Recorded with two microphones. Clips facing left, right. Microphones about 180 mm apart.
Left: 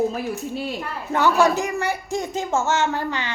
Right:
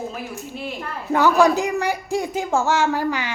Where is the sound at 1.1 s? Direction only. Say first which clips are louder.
Right 2 dB; 15° right (ahead or behind).